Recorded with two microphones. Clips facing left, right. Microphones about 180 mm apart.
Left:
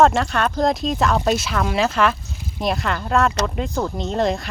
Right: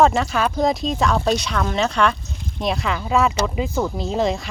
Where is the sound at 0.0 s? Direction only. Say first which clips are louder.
Left 1 dB; centre (ahead or behind).